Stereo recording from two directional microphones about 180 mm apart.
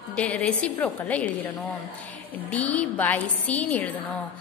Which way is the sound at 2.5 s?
10° left (ahead or behind).